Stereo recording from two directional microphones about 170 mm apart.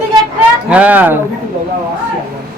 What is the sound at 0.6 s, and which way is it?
Speech, 10° right (ahead or behind).